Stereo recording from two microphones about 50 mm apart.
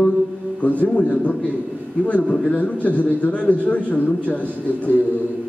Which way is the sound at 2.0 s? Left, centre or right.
Left.